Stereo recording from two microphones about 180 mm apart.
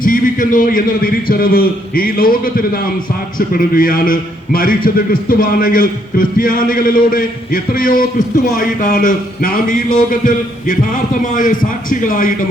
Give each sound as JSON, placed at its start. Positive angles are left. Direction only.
{"t": 0.0, "sound": "a man's voice", "side_deg": 50}